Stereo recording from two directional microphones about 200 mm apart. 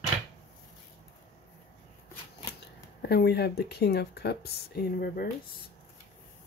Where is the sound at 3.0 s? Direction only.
55° left (ahead or behind).